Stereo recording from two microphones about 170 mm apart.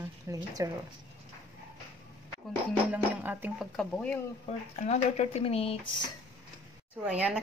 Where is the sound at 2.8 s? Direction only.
10° right (ahead or behind).